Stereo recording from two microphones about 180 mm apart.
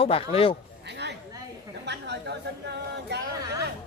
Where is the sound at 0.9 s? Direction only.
70° right (ahead or behind).